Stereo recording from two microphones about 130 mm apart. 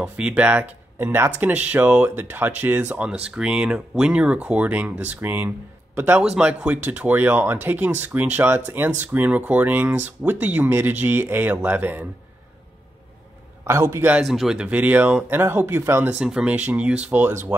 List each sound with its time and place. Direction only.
0.0 s a man's voice: 10° right (ahead or behind)
13.7 s a man's voice: 20° right (ahead or behind)
14.2 s speech: centre (ahead or behind); by 16.1 s 20° right (ahead or behind)
16.1 s speech: 5° right (ahead or behind)